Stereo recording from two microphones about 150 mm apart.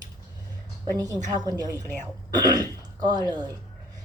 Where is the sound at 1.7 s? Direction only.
15° left (ahead or behind).